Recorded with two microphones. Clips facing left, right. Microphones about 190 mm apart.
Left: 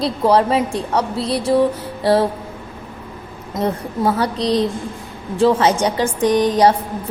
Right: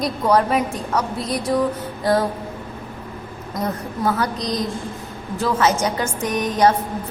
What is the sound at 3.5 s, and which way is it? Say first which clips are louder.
A woman's voice: left 5 dB; 30° left (ahead or behind).